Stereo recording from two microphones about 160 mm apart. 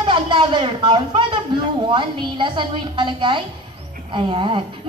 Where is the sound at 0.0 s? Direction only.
30° right (ahead or behind).